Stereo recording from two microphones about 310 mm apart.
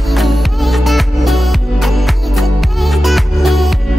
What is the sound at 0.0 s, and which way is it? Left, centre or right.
Music, centre.